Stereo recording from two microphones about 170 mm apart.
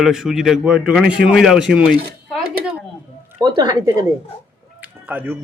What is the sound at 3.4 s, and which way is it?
Speech, 25° right (ahead or behind).